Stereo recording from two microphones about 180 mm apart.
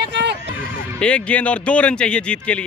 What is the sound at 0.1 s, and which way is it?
Horse, 75° right (ahead or behind).